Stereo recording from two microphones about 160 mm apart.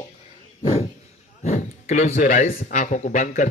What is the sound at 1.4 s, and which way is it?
A man's voice, 45° left (ahead or behind).